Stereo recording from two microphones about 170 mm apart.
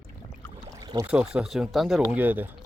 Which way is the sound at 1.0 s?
5° right (ahead or behind).